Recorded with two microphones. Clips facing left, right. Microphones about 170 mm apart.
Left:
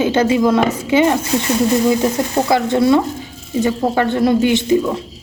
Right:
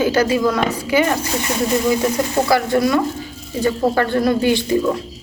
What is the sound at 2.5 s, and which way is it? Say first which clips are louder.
A woman's voice: left 4 dB; 25° left (ahead or behind).